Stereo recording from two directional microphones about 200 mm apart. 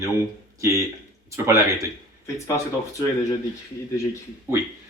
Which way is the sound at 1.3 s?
15° right (ahead or behind).